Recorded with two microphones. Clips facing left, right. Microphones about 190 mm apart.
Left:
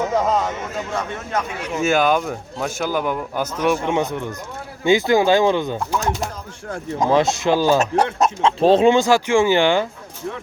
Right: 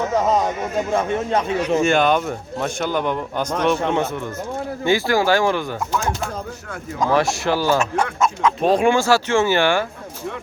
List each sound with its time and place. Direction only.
0.9 s speech: 25° right (ahead or behind)
1.8 s a man's voice: 5° left (ahead or behind); by 6.0 s 20° left (ahead or behind)
7.0 s speech: 20° left (ahead or behind)
7.8 s speech: 35° left (ahead or behind); by 9.8 s 15° left (ahead or behind)